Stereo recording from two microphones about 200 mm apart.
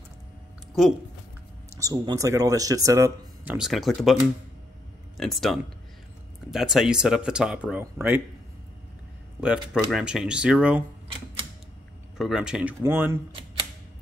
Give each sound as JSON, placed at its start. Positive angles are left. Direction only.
{"t": 1.8, "sound": "speech", "side_deg": -15}
{"t": 3.5, "sound": "speech", "side_deg": 0}
{"t": 9.4, "sound": "speech", "side_deg": -5}
{"t": 12.2, "sound": "speech", "side_deg": -5}